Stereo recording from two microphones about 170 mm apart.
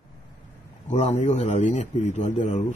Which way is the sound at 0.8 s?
45° left (ahead or behind).